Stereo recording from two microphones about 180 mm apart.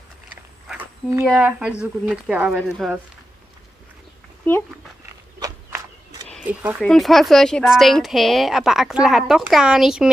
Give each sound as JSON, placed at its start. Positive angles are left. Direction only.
{"t": 1.2, "sound": "a woman's voice", "side_deg": -5}
{"t": 5.4, "sound": "walk", "side_deg": -20}
{"t": 6.4, "sound": "speech", "side_deg": -10}
{"t": 6.8, "sound": "a woman's voice", "side_deg": 0}